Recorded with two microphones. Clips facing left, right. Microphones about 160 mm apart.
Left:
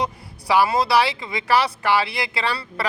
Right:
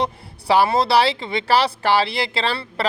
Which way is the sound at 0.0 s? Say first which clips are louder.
Right 2 dB; 30° right (ahead or behind).